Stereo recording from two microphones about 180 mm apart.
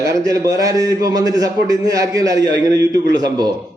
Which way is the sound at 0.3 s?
20° right (ahead or behind).